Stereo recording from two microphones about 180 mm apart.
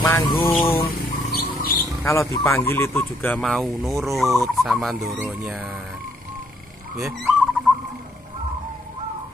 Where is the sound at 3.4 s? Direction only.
Centre (ahead or behind).